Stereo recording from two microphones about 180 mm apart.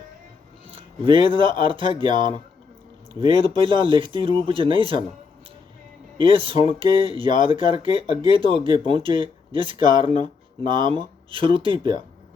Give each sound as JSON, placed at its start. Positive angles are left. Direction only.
{"t": 0.7, "sound": "speech", "side_deg": -30}
{"t": 6.1, "sound": "speech", "side_deg": -30}